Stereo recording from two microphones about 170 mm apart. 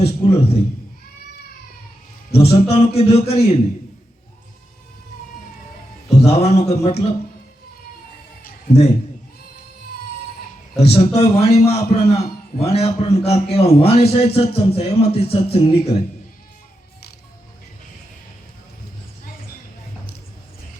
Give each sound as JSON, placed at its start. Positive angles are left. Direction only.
{"t": 0.0, "sound": "a man's voice", "side_deg": 35}
{"t": 2.3, "sound": "a man's voice", "side_deg": 35}
{"t": 6.1, "sound": "a man's voice", "side_deg": 35}
{"t": 10.8, "sound": "a man's voice", "side_deg": 35}